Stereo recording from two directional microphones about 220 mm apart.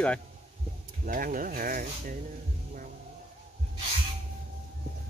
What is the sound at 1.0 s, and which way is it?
Speech, 40° right (ahead or behind).